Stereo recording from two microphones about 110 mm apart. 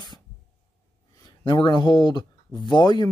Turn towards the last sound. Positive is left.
turn(degrees=40)  # may be behind; listen again after turning